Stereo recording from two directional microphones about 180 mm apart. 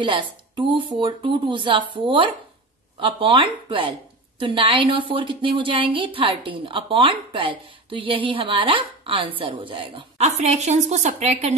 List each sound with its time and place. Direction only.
0.0 s a woman's voice: 25° right (ahead or behind)